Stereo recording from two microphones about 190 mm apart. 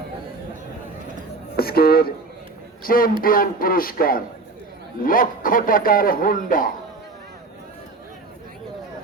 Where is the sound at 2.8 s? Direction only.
50° left (ahead or behind).